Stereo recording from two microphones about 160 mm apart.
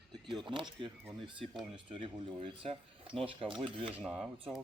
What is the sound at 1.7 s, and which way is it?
Speech, 30° right (ahead or behind).